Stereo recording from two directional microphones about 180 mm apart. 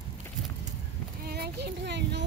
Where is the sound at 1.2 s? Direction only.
60° right (ahead or behind).